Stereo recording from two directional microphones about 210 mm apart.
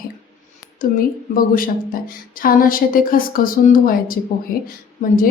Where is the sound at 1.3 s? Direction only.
40° left (ahead or behind).